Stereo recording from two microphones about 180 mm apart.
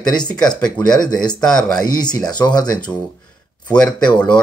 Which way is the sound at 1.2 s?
20° left (ahead or behind).